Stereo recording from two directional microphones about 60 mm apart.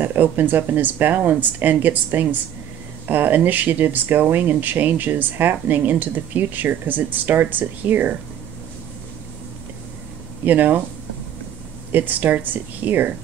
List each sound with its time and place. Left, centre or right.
0.0 s speech: right
10.4 s speech: right
11.9 s speech: right